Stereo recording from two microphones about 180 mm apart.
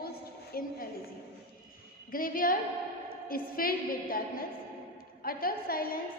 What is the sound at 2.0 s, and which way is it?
A woman's voice, 50° left (ahead or behind).